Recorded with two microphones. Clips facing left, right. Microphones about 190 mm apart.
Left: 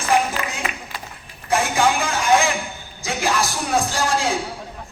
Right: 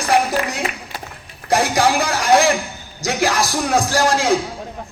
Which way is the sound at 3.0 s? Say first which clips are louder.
Right 3 dB; 85° right.